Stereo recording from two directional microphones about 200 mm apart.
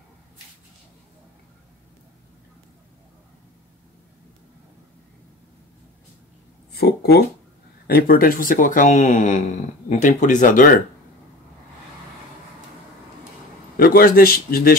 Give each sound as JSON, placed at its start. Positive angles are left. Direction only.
{"t": 6.7, "sound": "speech", "side_deg": 55}
{"t": 13.7, "sound": "a man's voice", "side_deg": 45}